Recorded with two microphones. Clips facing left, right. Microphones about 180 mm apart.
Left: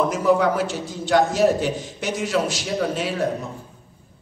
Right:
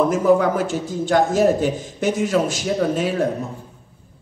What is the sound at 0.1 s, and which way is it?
A man's voice, 50° right (ahead or behind).